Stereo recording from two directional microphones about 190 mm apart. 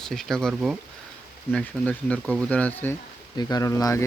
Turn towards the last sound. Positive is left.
turn(degrees=15)  # may be behind; listen again after turning